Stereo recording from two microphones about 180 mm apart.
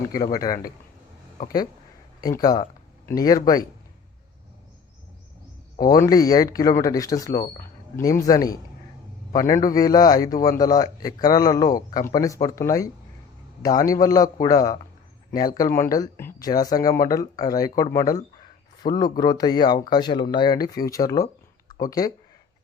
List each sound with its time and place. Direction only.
0.1 s speech: 20° left (ahead or behind)
2.2 s speech: 20° left (ahead or behind)
5.8 s a man's voice: 20° left (ahead or behind)